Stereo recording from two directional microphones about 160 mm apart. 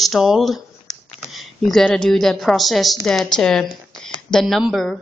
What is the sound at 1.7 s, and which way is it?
A woman's voice, 5° left (ahead or behind).